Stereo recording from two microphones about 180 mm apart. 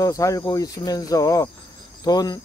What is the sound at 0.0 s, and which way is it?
Speech, 20° left (ahead or behind).